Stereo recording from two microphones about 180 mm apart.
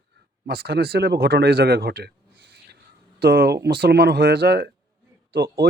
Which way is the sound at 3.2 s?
60° right (ahead or behind).